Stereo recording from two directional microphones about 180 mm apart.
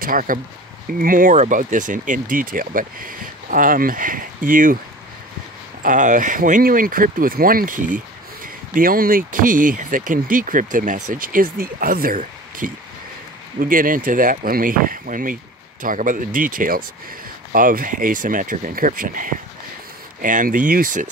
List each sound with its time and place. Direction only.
0.0 s speech: 50° right (ahead or behind)
5.8 s speech: 45° right (ahead or behind)